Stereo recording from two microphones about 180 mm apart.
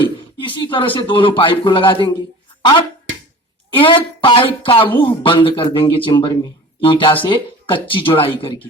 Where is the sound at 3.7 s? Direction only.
30° left (ahead or behind).